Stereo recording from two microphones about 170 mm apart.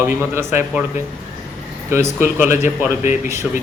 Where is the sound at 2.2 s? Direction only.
15° right (ahead or behind).